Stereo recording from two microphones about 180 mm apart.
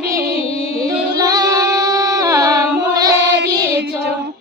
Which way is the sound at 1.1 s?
20° right (ahead or behind).